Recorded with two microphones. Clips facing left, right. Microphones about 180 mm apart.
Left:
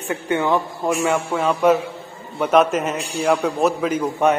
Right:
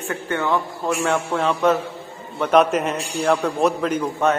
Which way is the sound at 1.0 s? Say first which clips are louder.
Even; 5° left (ahead or behind).